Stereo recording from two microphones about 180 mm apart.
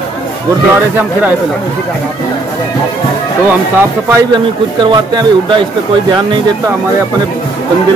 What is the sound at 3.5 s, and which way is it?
Speech, 10° right (ahead or behind).